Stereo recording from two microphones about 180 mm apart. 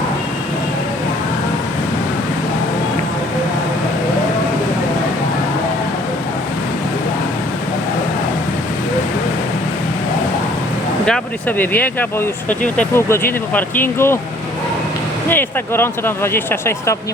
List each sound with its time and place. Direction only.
11.0 s speech: 5° left (ahead or behind)
15.3 s speech: 10° left (ahead or behind)